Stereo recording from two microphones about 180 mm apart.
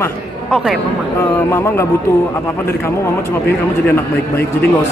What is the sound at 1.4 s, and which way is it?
Speech, 15° left (ahead or behind).